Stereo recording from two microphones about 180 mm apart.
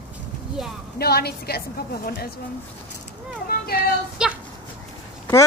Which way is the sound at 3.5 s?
55° left (ahead or behind).